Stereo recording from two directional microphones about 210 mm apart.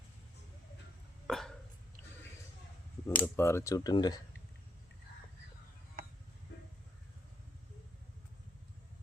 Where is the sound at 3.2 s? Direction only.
10° left (ahead or behind).